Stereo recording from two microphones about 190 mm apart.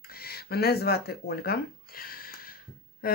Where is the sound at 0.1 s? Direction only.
55° left (ahead or behind).